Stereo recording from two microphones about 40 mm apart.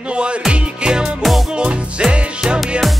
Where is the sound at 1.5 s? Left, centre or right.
Right.